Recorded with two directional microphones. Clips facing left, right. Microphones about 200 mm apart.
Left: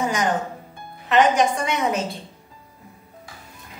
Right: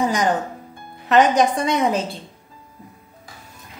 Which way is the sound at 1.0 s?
40° right (ahead or behind).